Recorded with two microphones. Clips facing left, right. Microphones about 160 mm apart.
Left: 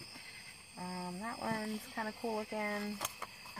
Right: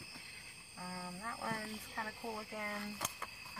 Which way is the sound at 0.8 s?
30° left (ahead or behind).